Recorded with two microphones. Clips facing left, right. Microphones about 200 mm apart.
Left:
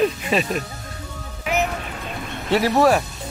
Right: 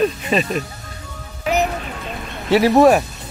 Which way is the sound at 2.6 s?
15° right (ahead or behind).